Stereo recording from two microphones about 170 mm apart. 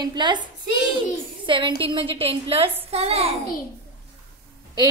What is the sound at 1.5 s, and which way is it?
A woman's voice, 30° right (ahead or behind).